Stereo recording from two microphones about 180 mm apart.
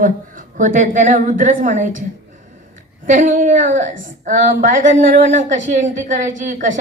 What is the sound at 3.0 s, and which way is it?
A woman's voice, 45° right (ahead or behind).